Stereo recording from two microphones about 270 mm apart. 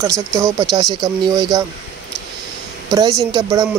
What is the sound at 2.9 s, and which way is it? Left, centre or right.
Speech, centre.